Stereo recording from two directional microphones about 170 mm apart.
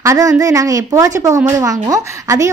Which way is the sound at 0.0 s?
20° right (ahead or behind).